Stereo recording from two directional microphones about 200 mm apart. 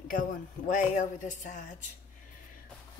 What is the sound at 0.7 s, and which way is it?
Speech, 35° left (ahead or behind).